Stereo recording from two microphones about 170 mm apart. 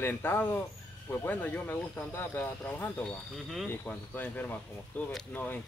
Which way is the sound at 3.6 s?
10° left (ahead or behind).